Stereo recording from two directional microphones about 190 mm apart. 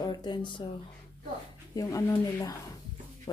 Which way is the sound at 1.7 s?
20° left (ahead or behind).